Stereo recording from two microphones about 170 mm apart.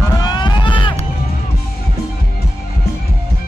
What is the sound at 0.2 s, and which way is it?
Run, 25° left (ahead or behind).